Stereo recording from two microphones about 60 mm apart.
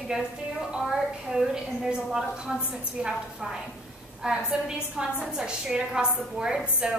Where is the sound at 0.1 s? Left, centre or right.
Centre.